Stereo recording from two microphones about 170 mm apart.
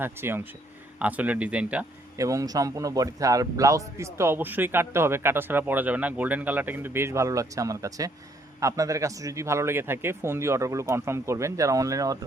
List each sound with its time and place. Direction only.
0.0 s a man's voice: 15° right (ahead or behind)
2.1 s a man's voice: 20° right (ahead or behind)